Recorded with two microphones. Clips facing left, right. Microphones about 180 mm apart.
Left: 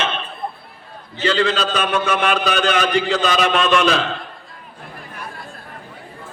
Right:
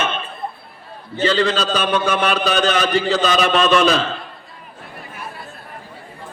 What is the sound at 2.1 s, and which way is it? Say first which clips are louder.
A man's voice: right 1 dB; 40° right (ahead or behind).